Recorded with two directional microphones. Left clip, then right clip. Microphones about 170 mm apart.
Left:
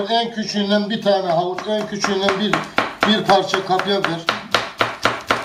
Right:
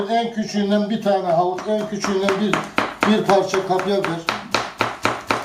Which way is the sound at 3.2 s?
10° left (ahead or behind).